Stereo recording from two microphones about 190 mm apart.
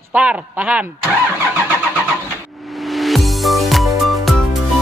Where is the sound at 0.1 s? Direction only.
5° right (ahead or behind).